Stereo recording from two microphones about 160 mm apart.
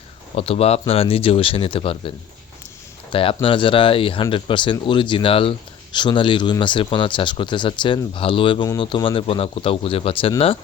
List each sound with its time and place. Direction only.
0.3 s speech: 35° left (ahead or behind)